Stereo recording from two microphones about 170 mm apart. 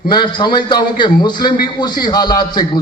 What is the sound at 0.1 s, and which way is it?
A man's voice, 25° left (ahead or behind).